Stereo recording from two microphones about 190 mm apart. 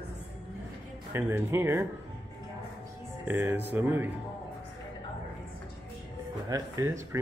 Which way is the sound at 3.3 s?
10° right (ahead or behind).